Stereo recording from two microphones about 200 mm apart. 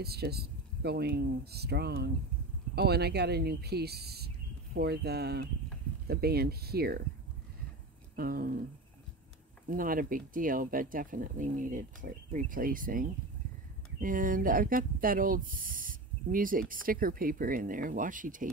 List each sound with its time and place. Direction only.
0.0 s speech: 55° right (ahead or behind)
8.2 s speech: 45° right (ahead or behind)
9.7 s speech: 45° right (ahead or behind)